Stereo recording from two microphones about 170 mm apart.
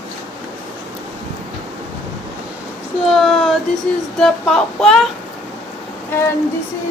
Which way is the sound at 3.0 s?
Centre (ahead or behind).